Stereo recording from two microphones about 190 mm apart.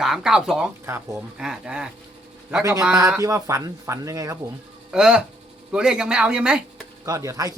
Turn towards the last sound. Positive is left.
turn(degrees=-15)  # may be behind; listen again after turning